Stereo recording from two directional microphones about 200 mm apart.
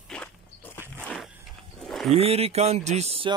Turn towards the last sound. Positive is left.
turn(degrees=-30)  # may be behind; listen again after turning